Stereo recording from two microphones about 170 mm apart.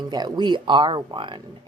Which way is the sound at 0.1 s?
25° right (ahead or behind).